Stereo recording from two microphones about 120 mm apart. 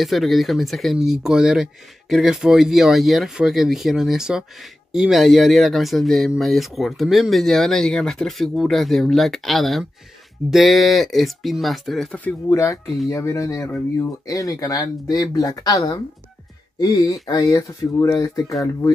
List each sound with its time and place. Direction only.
0.0 s speech: centre (ahead or behind)
12.4 s speech: 25° left (ahead or behind)
16.9 s speech: 35° left (ahead or behind)